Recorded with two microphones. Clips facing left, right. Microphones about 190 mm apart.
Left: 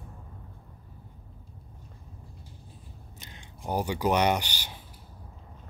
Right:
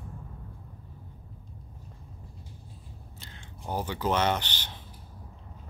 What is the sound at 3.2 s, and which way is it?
Speech, 15° left (ahead or behind).